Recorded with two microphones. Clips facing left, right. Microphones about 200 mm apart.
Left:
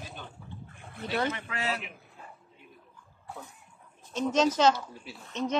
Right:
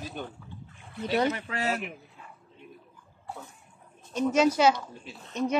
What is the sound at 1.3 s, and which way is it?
Speech, 40° right (ahead or behind).